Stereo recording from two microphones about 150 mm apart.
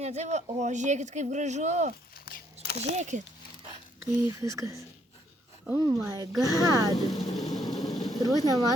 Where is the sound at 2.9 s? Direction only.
50° right (ahead or behind).